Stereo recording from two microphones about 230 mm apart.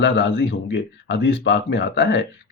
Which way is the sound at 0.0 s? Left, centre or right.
Left.